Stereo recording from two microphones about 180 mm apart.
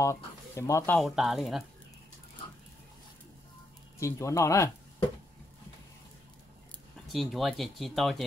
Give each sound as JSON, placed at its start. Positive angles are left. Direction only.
{"t": 0.0, "sound": "speech", "side_deg": 15}
{"t": 0.9, "sound": "speech", "side_deg": 0}
{"t": 4.0, "sound": "speech", "side_deg": 15}
{"t": 7.1, "sound": "speech", "side_deg": 0}